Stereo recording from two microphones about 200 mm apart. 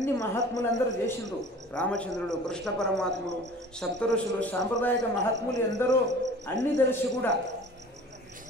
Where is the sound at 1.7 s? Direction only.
5° left (ahead or behind).